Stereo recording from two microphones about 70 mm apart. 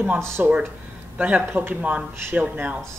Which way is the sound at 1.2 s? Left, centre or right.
Right.